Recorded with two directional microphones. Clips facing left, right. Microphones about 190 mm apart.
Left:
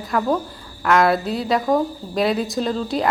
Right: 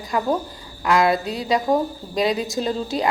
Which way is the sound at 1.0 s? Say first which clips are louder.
Left 1 dB; centre (ahead or behind).